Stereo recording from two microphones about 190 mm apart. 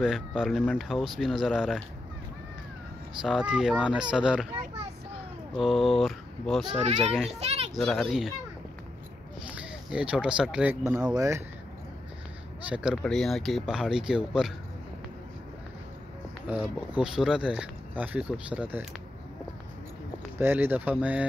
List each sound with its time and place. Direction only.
0.0 s speech: centre (ahead or behind)
3.2 s speech: 5° right (ahead or behind)
5.6 s speech: centre (ahead or behind)
6.8 s a child's voice: 35° right (ahead or behind)
7.7 s speech: centre (ahead or behind)
9.6 s speech: 5° right (ahead or behind)
12.6 s speech: 5° right (ahead or behind)
17.0 s speech: 5° right (ahead or behind)
20.3 s speech: 10° right (ahead or behind)